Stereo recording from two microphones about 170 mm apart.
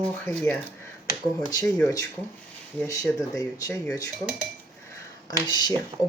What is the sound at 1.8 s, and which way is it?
Speech, 20° left (ahead or behind).